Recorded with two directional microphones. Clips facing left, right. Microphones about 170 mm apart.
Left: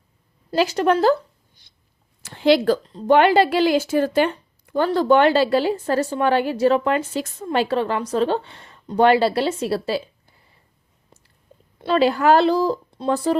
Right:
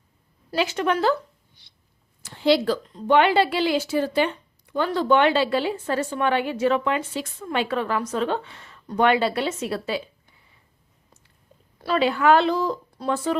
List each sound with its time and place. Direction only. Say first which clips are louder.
0.5 s a woman's voice: left 5 dB; 40° left (ahead or behind)
2.2 s speech: left 3 dB; 65° left (ahead or behind)
2.9 s a woman's voice: left 3 dB; 40° left (ahead or behind)
11.9 s a woman's voice: left 3 dB; 40° left (ahead or behind)